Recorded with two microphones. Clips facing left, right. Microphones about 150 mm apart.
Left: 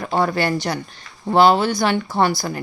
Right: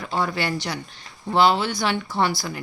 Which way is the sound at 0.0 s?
50° left (ahead or behind).